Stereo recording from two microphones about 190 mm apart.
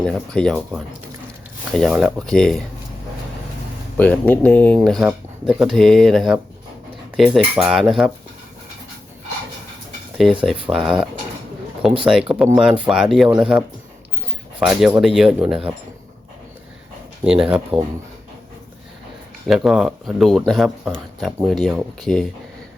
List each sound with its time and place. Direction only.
0.0 s speech: centre (ahead or behind)
3.9 s speech: 10° left (ahead or behind)
10.2 s speech: centre (ahead or behind)
10.7 s speech: 15° right (ahead or behind)
12.0 s speech: 5° right (ahead or behind)
17.2 s speech: 5° right (ahead or behind)
19.5 s speech: 5° right (ahead or behind)